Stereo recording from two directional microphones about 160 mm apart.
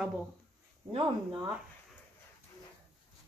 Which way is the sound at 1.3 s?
10° right (ahead or behind).